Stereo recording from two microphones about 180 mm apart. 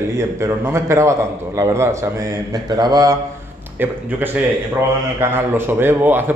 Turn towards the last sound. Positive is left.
turn(degrees=-10)  # may be behind; listen again after turning